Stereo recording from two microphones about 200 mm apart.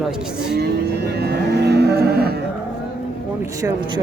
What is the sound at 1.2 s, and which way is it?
Moo, 55° right (ahead or behind).